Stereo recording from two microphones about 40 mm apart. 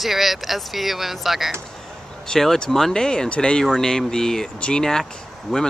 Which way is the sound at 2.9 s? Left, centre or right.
Centre.